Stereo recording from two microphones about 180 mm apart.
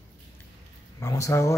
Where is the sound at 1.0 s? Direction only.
15° left (ahead or behind).